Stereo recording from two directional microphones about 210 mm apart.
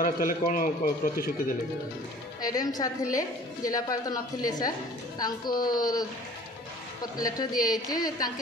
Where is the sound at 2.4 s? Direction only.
20° left (ahead or behind).